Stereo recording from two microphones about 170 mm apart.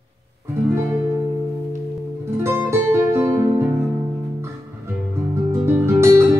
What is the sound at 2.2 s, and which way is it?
Guitar, 15° right (ahead or behind).